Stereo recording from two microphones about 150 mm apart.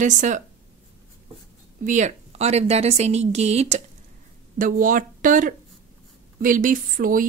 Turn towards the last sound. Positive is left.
turn(degrees=-65)  # may be behind; listen again after turning